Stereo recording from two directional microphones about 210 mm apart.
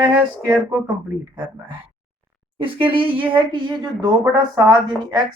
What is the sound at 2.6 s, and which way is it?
A woman's voice, 25° right (ahead or behind).